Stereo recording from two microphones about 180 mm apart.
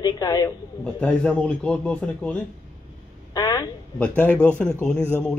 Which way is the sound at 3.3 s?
20° left (ahead or behind).